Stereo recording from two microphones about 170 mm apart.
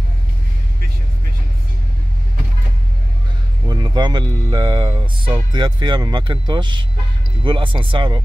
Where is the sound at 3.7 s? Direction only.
25° right (ahead or behind).